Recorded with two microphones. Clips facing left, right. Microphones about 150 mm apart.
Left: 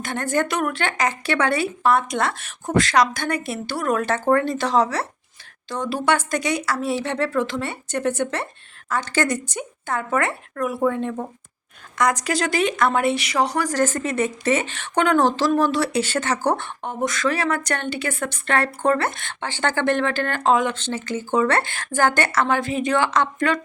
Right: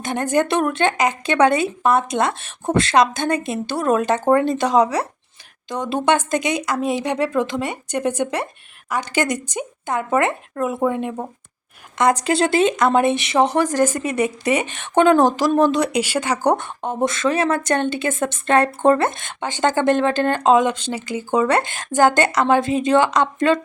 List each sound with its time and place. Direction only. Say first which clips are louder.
0.0 s speech: right 4 dB; 15° right (ahead or behind)